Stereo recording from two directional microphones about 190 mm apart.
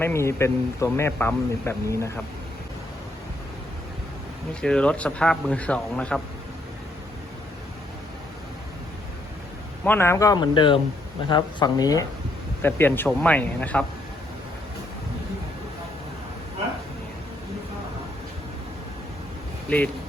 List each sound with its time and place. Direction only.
0.0 s speech: 15° left (ahead or behind)
4.6 s speech: 5° left (ahead or behind)
9.8 s speech: 10° left (ahead or behind)